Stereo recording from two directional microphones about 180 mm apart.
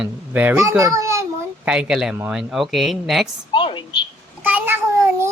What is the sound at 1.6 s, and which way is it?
Speech, 5° right (ahead or behind).